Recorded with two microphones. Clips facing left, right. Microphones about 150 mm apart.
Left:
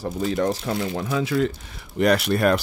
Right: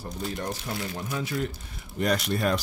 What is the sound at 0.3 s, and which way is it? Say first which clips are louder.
Speech: left 11 dB; 90° left.